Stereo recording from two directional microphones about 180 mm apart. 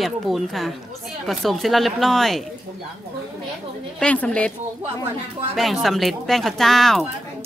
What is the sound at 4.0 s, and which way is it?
Speech, 5° left (ahead or behind).